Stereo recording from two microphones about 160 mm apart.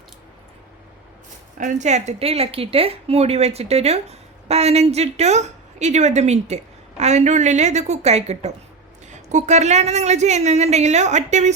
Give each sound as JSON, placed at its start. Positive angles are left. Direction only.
{"t": 1.5, "sound": "a woman's voice", "side_deg": -50}